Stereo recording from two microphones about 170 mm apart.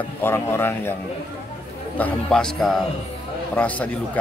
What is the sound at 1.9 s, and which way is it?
A man's voice, 5° left (ahead or behind).